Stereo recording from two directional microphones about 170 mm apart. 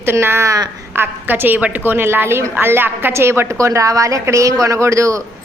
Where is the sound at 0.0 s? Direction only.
15° right (ahead or behind).